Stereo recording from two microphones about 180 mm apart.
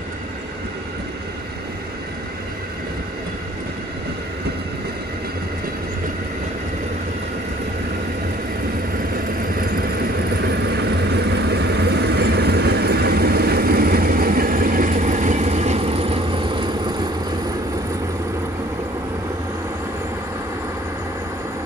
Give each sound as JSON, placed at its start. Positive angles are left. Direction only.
{"t": 9.6, "sound": "vehicle", "side_deg": -55}